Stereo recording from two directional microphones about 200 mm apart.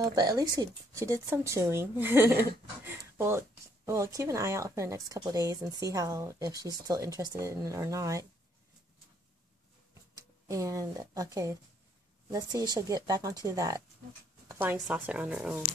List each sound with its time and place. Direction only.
0.0 s speech: 20° right (ahead or behind)
10.1 s speech: 15° right (ahead or behind)